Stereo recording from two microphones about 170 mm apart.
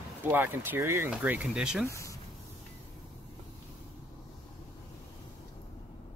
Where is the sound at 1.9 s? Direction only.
15° left (ahead or behind).